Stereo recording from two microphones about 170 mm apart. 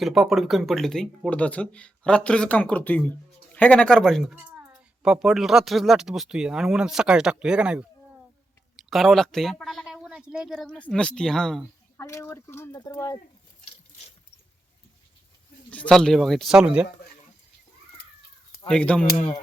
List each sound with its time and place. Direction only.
0.0 s speech: centre (ahead or behind)
4.4 s speech: 10° right (ahead or behind)
8.9 s speech: centre (ahead or behind)
11.9 s speech: 15° left (ahead or behind)
15.7 s speech: 5° left (ahead or behind)
18.7 s speech: 5° left (ahead or behind)